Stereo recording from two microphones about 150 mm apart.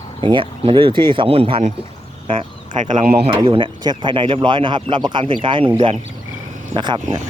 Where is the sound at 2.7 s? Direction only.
55° right (ahead or behind).